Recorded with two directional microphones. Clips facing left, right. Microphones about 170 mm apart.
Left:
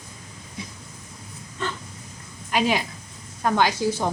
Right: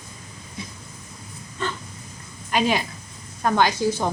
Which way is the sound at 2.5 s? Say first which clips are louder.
Right 1 dB; 5° left (ahead or behind).